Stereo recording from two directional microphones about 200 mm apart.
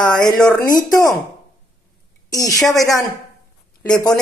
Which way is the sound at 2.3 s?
15° left (ahead or behind).